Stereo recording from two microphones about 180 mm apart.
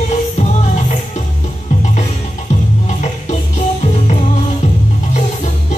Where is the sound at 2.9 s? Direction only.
40° left (ahead or behind).